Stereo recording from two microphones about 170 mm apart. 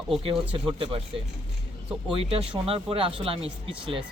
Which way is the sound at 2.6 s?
35° right (ahead or behind).